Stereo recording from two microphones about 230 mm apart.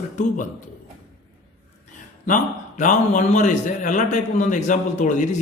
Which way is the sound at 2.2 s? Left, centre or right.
Left.